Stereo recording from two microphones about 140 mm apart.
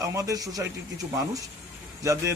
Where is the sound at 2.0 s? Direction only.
20° right (ahead or behind).